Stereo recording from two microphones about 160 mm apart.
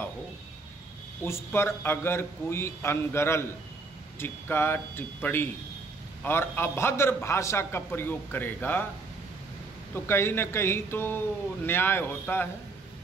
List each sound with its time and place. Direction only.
1.2 s a man's voice: 15° left (ahead or behind)
9.9 s a man's voice: 15° left (ahead or behind)